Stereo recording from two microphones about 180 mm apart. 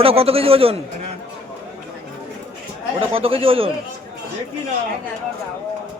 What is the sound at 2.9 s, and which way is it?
Speech, 30° right (ahead or behind).